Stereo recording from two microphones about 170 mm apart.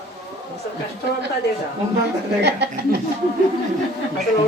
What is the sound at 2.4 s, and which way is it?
Speech, 80° right.